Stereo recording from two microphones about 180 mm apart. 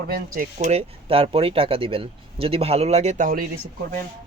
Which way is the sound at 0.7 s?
30° right (ahead or behind).